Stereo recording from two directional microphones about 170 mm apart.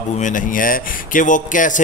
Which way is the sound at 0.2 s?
50° left (ahead or behind).